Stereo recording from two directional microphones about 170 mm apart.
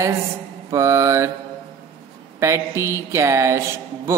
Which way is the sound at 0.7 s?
15° right (ahead or behind).